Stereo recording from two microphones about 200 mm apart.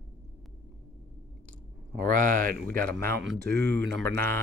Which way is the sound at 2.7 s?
10° left (ahead or behind).